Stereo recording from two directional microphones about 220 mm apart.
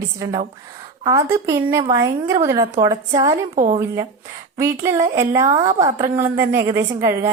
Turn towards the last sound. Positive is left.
turn(degrees=-15)  # may be behind; listen again after turning